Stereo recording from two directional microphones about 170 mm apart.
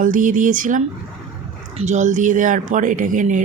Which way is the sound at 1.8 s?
45° right (ahead or behind).